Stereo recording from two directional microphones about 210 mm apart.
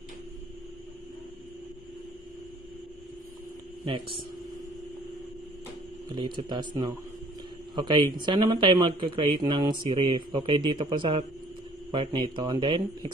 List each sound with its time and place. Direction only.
6.0 s speech: 20° right (ahead or behind)
7.7 s speech: 20° right (ahead or behind)